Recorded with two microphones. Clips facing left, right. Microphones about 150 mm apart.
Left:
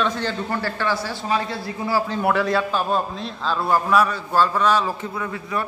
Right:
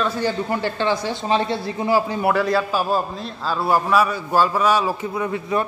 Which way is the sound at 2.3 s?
Centre (ahead or behind).